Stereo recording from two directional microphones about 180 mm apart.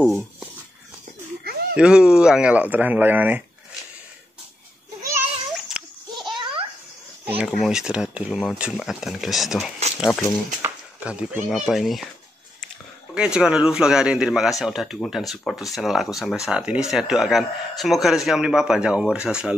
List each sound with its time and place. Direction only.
0.0 s speech: centre (ahead or behind)
1.8 s speech: 5° right (ahead or behind)
5.7 s goat: centre (ahead or behind)
6.3 s a sound: 25° right (ahead or behind)
7.2 s a man's voice: 5° right (ahead or behind)
13.1 s a man's voice: 5° right (ahead or behind)